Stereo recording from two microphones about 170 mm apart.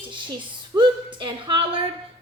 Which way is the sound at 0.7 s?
30° right (ahead or behind).